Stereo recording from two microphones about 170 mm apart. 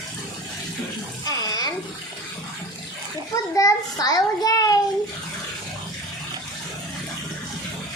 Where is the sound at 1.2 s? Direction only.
20° left (ahead or behind).